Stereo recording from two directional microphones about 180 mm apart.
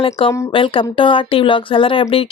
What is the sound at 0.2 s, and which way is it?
Speech, 30° left (ahead or behind).